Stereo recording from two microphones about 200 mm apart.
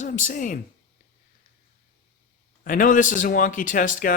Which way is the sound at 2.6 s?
45° left (ahead or behind).